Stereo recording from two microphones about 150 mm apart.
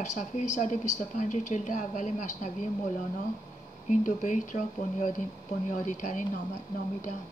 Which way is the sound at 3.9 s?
55° left (ahead or behind).